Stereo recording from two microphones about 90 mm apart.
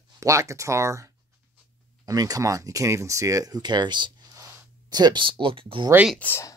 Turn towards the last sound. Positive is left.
turn(degrees=20)  # may be behind; listen again after turning